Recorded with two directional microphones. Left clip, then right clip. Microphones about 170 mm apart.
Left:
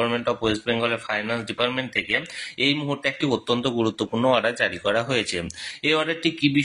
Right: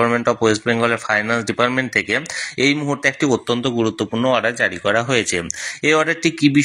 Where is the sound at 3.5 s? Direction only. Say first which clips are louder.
Right 4 dB; 15° right (ahead or behind); by 6.6 s 35° right (ahead or behind).